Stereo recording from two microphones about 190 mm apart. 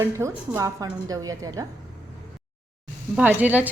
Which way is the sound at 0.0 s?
15° right (ahead or behind).